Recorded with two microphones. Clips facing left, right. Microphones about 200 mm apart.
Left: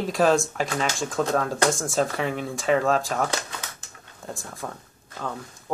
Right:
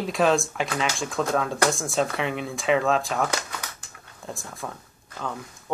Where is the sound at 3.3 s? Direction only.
25° left (ahead or behind).